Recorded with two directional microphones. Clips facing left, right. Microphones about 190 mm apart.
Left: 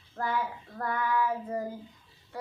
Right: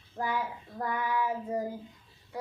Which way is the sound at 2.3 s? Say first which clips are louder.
Right 1 dB; 15° right (ahead or behind).